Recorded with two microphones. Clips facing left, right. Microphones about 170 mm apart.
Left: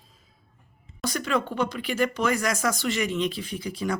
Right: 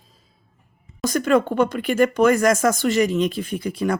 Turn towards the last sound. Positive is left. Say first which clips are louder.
# right 6 dB
turn(degrees=-55)  # may be behind; listen again after turning